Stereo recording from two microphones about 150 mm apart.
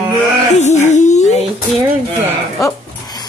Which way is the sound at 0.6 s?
50° left (ahead or behind).